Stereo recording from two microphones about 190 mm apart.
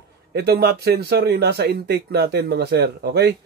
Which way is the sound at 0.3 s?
55° right (ahead or behind).